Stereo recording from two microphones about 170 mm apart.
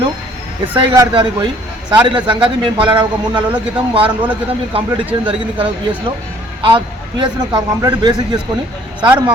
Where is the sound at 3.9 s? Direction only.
30° right (ahead or behind).